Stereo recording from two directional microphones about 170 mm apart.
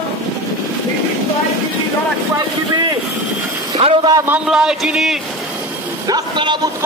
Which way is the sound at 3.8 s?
35° right (ahead or behind).